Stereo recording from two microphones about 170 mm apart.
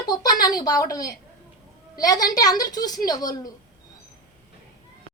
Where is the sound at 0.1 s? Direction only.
25° left (ahead or behind).